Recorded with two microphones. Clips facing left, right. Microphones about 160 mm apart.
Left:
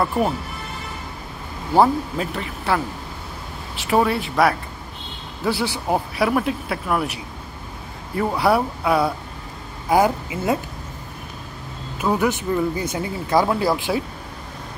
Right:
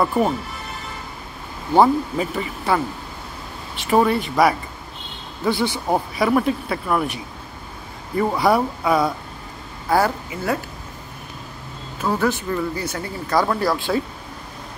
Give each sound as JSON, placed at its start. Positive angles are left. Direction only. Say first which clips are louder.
{"t": 1.8, "sound": "speech", "louder": "right 1 dB", "side_deg": 0}
{"t": 8.2, "sound": "speech", "louder": "right 1 dB", "side_deg": 0}
{"t": 9.8, "sound": "speech", "louder": "left 2 dB", "side_deg": 15}
{"t": 12.0, "sound": "speech", "louder": "left 1 dB", "side_deg": 15}